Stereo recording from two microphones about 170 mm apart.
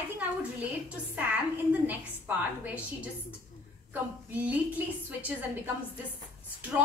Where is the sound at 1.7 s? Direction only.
10° right (ahead or behind).